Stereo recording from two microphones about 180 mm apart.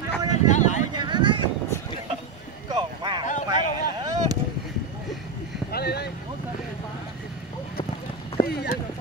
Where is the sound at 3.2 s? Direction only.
45° left (ahead or behind).